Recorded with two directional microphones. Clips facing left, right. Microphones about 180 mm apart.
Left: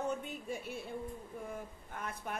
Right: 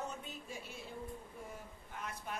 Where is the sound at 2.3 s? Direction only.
55° left (ahead or behind).